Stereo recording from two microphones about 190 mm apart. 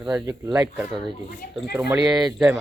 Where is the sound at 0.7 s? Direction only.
5° right (ahead or behind).